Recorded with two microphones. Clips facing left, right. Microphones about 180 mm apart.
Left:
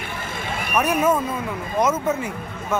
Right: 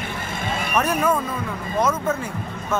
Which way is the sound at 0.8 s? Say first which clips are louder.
Left 2 dB; 20° left (ahead or behind).